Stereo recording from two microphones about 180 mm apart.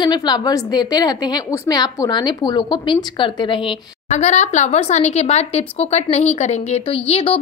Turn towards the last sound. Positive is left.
turn(degrees=30)  # may be behind; listen again after turning